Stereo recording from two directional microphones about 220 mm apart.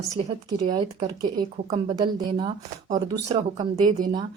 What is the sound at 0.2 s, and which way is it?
Speech, 30° right (ahead or behind).